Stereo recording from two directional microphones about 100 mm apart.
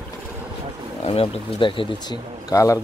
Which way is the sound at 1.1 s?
70° left (ahead or behind).